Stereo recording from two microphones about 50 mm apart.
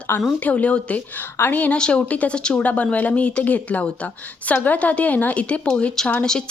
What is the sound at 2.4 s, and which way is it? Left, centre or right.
Speech, centre.